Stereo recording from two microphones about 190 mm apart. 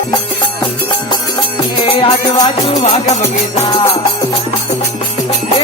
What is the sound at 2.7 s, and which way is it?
Music, 40° left (ahead or behind).